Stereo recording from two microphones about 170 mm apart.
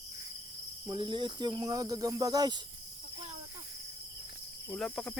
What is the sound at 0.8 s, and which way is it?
Speech, 25° right (ahead or behind).